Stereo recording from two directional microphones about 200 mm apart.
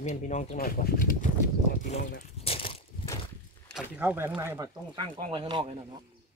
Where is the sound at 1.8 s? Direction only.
35° left (ahead or behind).